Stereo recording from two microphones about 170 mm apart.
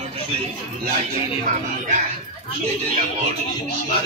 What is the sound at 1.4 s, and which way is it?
Speech, 45° right (ahead or behind).